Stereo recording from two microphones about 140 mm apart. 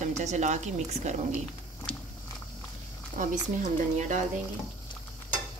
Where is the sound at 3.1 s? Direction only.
60° right (ahead or behind).